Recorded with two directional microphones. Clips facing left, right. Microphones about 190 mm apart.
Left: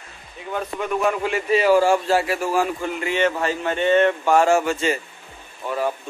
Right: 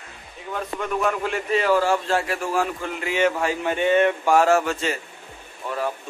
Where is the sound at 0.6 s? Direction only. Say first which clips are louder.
Left 2 dB; centre (ahead or behind).